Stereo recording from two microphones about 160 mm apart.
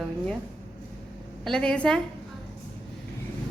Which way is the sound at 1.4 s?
5° left (ahead or behind).